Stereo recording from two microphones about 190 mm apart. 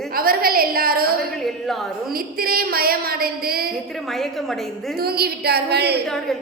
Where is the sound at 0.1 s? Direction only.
50° right (ahead or behind).